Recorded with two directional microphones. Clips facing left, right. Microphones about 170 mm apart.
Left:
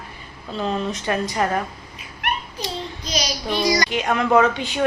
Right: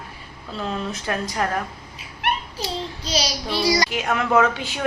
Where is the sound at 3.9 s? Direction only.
Centre (ahead or behind).